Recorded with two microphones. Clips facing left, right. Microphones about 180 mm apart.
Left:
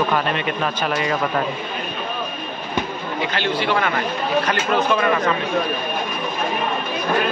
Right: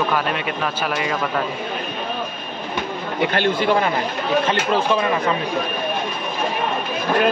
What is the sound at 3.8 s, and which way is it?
Speech, 25° right (ahead or behind).